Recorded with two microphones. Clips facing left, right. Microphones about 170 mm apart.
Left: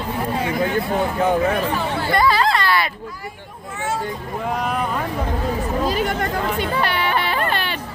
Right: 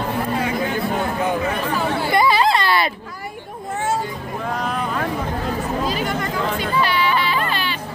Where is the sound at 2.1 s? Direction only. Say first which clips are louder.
Right 1 dB; 15° right (ahead or behind).